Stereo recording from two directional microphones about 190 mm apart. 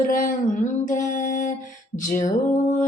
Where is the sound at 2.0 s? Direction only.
40° left (ahead or behind).